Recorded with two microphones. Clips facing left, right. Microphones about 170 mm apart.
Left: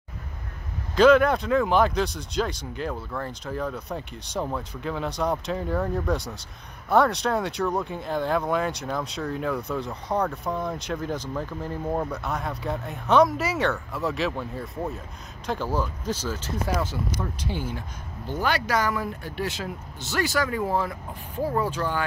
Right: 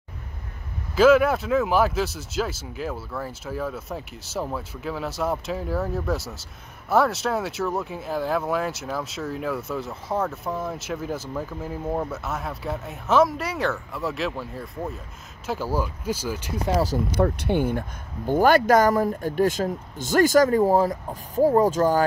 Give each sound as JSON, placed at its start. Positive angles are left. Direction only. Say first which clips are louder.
{"t": 0.9, "sound": "speech", "louder": "even", "side_deg": -5}
{"t": 17.2, "sound": "speech", "louder": "right 10 dB", "side_deg": -60}